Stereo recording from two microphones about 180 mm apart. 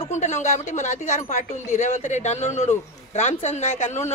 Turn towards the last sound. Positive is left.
turn(degrees=40)  # may be behind; listen again after turning